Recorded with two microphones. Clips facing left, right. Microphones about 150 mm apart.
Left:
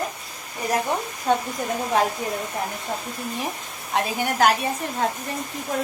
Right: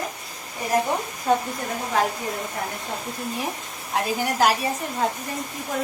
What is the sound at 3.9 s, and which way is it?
A woman's voice, centre (ahead or behind).